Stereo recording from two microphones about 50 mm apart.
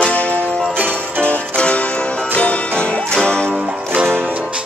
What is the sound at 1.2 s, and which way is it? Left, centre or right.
Music, left.